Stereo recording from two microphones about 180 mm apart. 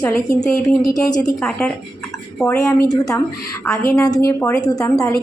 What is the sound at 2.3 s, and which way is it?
A woman's voice, 15° left (ahead or behind).